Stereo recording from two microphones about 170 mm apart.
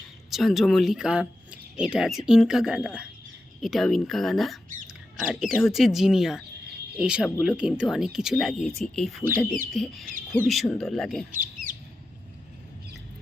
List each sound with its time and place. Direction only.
0.3 s speech: centre (ahead or behind)
11.3 s bird: 50° right (ahead or behind)